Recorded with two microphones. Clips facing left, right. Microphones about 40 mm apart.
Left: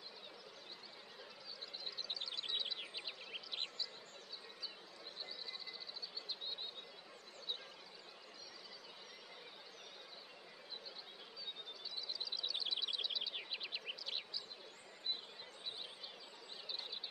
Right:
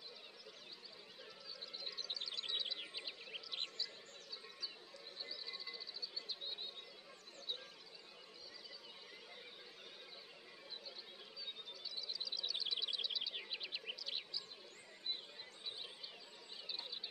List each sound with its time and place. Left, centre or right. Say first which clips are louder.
2.0 s insect: left 1 dB; centre
5.2 s neigh: even; left
6.2 s a sound: left 1 dB; centre
12.1 s insect: left 1 dB; centre